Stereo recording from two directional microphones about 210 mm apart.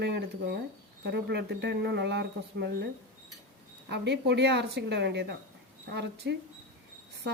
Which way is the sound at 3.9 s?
55° right (ahead or behind).